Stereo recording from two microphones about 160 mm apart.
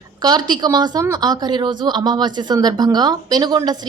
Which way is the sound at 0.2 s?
25° right (ahead or behind).